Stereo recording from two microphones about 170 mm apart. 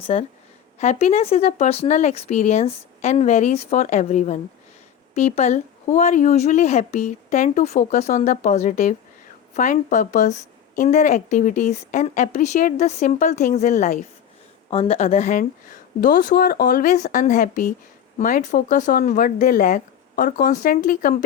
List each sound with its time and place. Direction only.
0.0 s a woman's voice: 40° left (ahead or behind)